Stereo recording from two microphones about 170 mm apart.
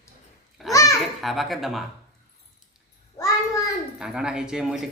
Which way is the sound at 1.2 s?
Centre (ahead or behind).